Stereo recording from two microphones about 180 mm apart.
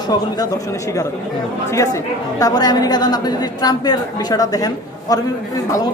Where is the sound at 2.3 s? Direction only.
20° left (ahead or behind).